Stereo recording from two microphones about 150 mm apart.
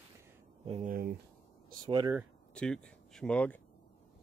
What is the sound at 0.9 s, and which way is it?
Speech, 85° right.